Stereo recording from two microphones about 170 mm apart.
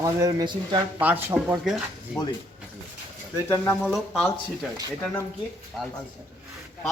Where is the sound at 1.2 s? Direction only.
10° right (ahead or behind).